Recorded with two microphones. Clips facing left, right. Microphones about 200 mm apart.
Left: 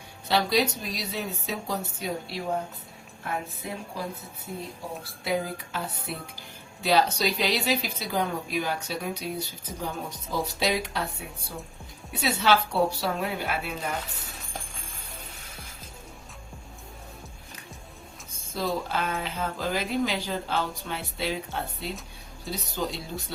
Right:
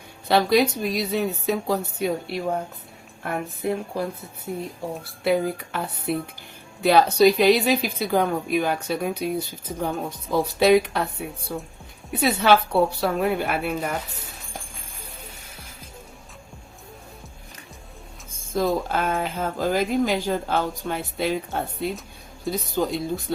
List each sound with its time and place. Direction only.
0.3 s a woman's voice: 55° right (ahead or behind)
18.3 s speech: 50° right (ahead or behind)